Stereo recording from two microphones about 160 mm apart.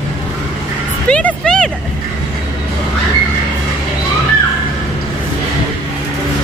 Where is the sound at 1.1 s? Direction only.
5° left (ahead or behind).